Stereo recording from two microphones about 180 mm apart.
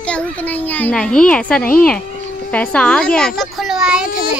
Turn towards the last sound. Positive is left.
turn(degrees=-5)  # may be behind; listen again after turning